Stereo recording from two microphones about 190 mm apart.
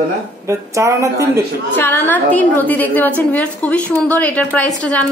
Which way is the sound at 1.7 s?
10° left (ahead or behind).